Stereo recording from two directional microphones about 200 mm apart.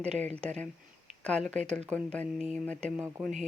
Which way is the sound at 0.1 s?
35° right (ahead or behind).